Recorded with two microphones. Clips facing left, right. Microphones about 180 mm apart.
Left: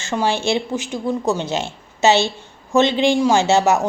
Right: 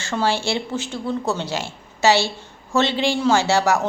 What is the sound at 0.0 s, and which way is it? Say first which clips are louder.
A woman's voice: left 2 dB; 15° left (ahead or behind).